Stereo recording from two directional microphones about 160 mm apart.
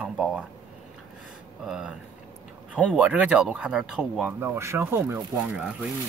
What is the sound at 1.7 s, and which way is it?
Speech, 5° right (ahead or behind).